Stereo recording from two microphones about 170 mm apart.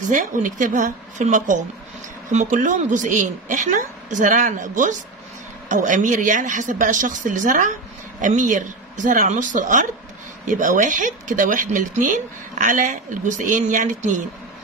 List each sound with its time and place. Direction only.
0.0 s speech: 50° right (ahead or behind)